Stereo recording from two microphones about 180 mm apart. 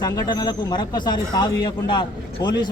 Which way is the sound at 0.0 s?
20° left (ahead or behind).